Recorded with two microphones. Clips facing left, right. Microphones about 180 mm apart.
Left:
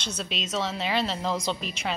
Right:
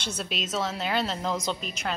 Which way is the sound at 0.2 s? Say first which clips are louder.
Even; 5° right (ahead or behind).